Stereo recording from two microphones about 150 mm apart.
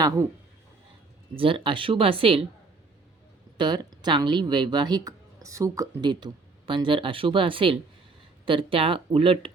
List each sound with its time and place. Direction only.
0.0 s speech: 20° right (ahead or behind)
1.4 s speech: 35° right (ahead or behind)
3.6 s speech: 30° right (ahead or behind)